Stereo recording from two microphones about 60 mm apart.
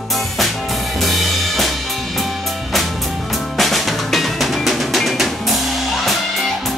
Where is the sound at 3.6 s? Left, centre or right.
Centre.